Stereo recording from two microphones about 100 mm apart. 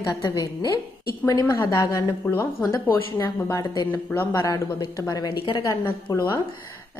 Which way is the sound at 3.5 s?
35° left (ahead or behind).